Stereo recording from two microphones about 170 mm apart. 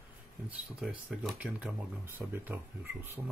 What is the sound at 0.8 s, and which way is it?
Speech, 5° right (ahead or behind).